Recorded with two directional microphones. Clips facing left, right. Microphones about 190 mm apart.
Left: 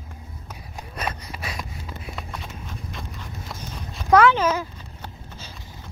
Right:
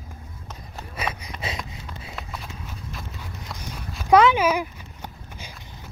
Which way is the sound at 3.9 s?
10° right (ahead or behind).